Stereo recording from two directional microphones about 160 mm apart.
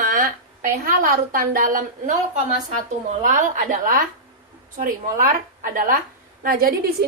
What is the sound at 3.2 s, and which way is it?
A woman's voice, 55° right (ahead or behind).